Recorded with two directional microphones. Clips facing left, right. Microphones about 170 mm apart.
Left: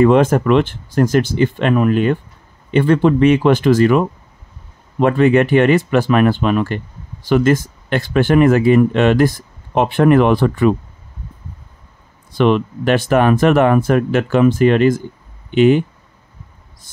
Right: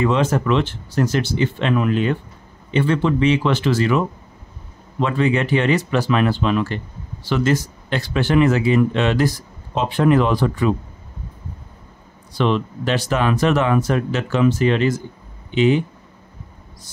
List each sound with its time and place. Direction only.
0.0 s speech: 55° left (ahead or behind)
5.0 s speech: 55° left (ahead or behind)
12.4 s speech: 55° left (ahead or behind)